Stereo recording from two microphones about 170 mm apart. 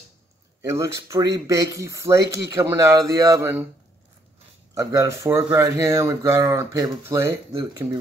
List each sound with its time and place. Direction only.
0.7 s speech: 20° right (ahead or behind)
4.7 s speech: 20° right (ahead or behind)